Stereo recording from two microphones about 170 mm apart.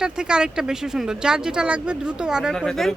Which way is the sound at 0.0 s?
5° right (ahead or behind).